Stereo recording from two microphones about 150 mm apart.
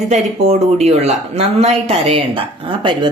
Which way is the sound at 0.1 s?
45° right (ahead or behind).